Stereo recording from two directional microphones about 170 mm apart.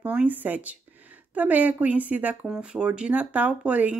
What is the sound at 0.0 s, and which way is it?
Speech, 5° right (ahead or behind).